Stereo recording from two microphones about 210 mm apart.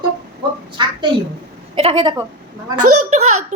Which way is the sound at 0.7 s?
20° right (ahead or behind).